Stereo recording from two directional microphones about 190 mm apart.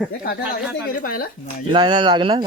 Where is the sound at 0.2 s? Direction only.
60° left (ahead or behind).